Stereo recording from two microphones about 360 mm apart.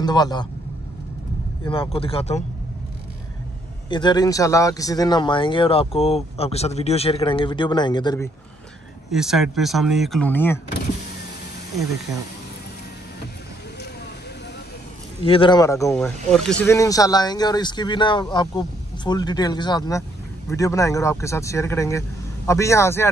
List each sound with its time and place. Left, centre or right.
0.0 s speech: centre
1.7 s speech: centre
3.9 s speech: centre
9.1 s speech: centre
15.2 s speech: centre